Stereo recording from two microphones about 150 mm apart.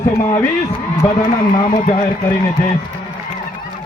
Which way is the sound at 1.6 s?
35° left (ahead or behind).